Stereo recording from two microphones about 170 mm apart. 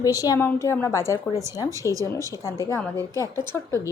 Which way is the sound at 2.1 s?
15° left (ahead or behind).